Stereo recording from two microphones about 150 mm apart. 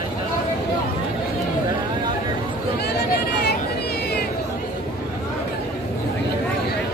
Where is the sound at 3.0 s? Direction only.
90° left.